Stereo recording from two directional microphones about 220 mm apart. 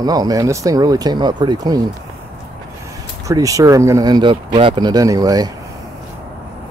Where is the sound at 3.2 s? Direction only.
15° right (ahead or behind).